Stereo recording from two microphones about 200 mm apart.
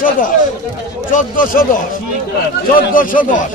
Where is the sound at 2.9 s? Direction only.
40° left (ahead or behind).